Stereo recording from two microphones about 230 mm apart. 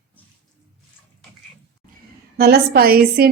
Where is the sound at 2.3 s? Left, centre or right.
Right.